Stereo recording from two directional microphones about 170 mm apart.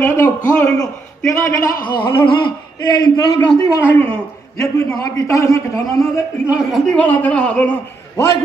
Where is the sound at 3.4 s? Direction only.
10° left (ahead or behind).